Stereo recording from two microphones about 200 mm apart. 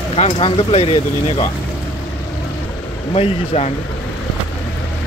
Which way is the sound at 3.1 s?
30° left (ahead or behind).